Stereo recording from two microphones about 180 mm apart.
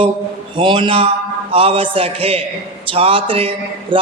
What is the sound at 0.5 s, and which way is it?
Mantra, 25° right (ahead or behind).